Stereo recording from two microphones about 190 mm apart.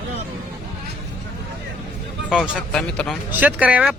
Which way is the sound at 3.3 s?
10° right (ahead or behind).